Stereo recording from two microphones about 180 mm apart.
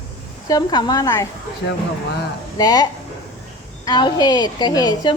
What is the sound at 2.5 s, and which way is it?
A woman's voice, 20° left (ahead or behind).